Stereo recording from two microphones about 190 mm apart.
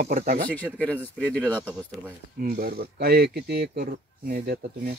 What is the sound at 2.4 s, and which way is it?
Speech, 55° right (ahead or behind).